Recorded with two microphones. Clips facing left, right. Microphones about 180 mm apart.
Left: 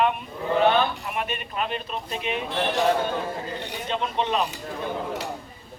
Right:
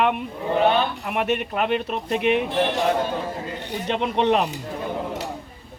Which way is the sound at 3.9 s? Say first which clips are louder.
Right 6 dB; 65° right (ahead or behind).